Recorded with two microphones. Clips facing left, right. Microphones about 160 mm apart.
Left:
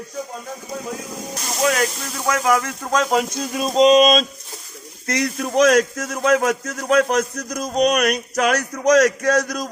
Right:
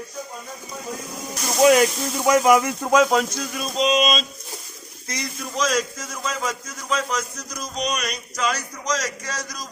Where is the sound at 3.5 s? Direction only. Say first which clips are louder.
Left 12 dB; 35° left (ahead or behind).